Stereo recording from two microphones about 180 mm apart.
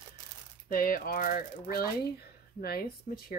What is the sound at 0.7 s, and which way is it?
Speech, 55° left (ahead or behind).